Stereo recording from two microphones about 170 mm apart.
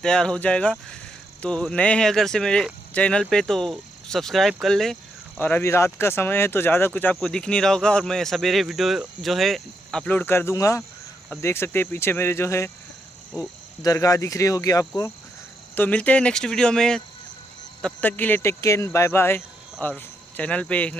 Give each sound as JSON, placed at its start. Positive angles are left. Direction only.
{"t": 0.0, "sound": "speech", "side_deg": 5}
{"t": 5.4, "sound": "speech", "side_deg": 15}
{"t": 13.8, "sound": "speech", "side_deg": 20}
{"t": 15.7, "sound": "speech", "side_deg": 10}